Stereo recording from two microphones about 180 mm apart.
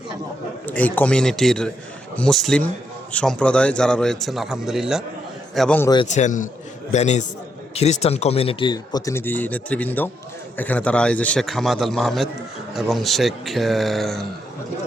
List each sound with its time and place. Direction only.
0.6 s a man's voice: 10° left (ahead or behind)
5.5 s a man's voice: 5° left (ahead or behind)
6.1 s a man's voice: 40° left (ahead or behind); by 14.3 s centre (ahead or behind)